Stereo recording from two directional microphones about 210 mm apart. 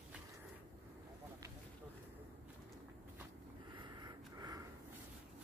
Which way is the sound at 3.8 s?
20° right (ahead or behind).